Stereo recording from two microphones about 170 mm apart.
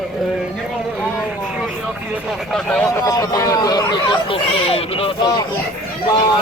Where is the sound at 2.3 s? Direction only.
5° left (ahead or behind); by 5.1 s 35° left (ahead or behind).